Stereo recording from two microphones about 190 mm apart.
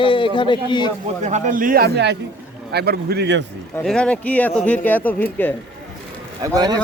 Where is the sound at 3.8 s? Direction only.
5° left (ahead or behind).